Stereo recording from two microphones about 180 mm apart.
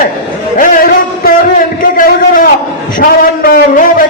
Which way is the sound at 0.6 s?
50° left (ahead or behind).